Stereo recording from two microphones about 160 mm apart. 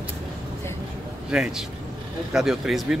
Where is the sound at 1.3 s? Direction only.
5° right (ahead or behind).